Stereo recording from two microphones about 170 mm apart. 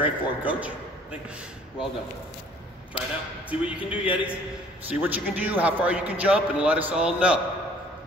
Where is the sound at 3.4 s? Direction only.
10° right (ahead or behind).